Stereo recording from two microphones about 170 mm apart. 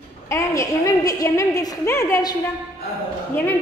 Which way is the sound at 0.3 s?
20° left (ahead or behind).